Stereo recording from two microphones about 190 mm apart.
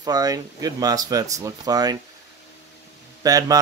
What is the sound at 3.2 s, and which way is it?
Speech, 20° right (ahead or behind).